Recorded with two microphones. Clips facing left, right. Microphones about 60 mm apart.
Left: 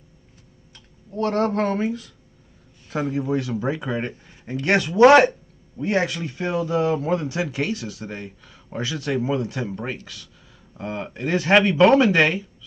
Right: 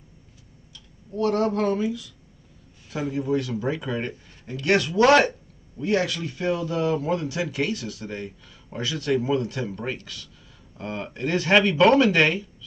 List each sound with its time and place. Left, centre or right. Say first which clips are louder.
0.7 s speech: left 1 dB; left
3.2 s speech: left 1 dB; left